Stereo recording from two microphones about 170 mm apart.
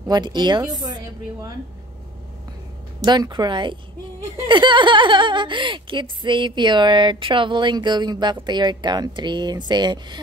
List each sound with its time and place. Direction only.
0.1 s speech: 25° right (ahead or behind)
3.1 s speech: 25° right (ahead or behind)